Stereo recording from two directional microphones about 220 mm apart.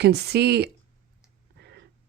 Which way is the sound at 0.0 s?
50° right (ahead or behind).